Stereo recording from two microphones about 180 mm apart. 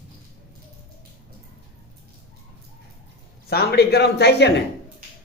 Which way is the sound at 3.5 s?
60° left (ahead or behind).